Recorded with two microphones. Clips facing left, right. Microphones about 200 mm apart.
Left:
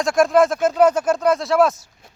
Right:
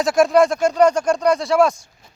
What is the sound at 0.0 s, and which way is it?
Speech, centre (ahead or behind).